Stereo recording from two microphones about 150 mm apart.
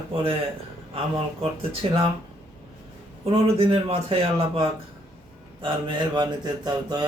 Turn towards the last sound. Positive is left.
turn(degrees=-25)  # may be behind; listen again after turning